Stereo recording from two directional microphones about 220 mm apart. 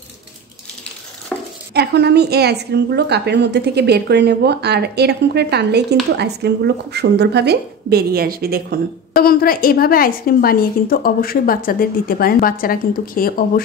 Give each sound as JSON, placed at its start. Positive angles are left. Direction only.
{"t": 1.7, "sound": "a woman's voice", "side_deg": -50}
{"t": 9.1, "sound": "a woman's voice", "side_deg": 45}